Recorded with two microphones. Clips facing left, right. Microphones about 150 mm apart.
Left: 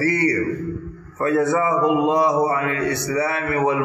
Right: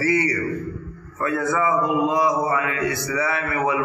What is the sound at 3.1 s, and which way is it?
Speech, 40° left (ahead or behind).